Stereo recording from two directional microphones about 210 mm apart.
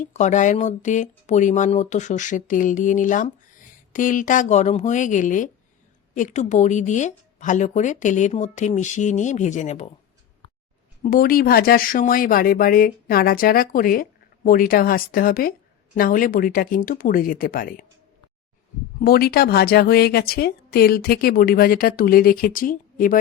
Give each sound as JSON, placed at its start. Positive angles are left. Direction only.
{"t": 0.0, "sound": "speech", "side_deg": 35}
{"t": 11.0, "sound": "speech", "side_deg": 45}
{"t": 18.9, "sound": "speech", "side_deg": 45}